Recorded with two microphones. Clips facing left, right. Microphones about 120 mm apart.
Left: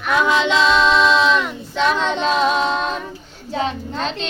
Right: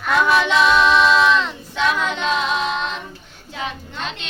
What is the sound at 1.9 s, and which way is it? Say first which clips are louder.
Child singing: left 3 dB; 30° left (ahead or behind).